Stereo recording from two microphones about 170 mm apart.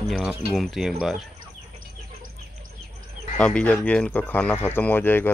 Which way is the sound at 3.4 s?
5° left (ahead or behind).